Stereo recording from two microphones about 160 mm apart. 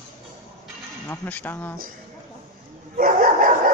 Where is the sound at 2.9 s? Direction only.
60° right (ahead or behind).